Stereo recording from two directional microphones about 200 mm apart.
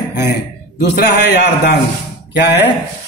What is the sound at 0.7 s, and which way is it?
A man's voice, 55° left (ahead or behind).